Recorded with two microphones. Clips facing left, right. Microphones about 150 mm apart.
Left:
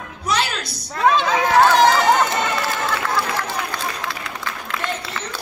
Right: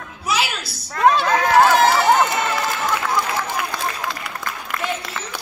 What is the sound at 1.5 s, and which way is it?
Run, 5° right (ahead or behind).